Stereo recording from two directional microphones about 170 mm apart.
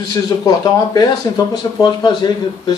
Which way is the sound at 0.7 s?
20° left (ahead or behind).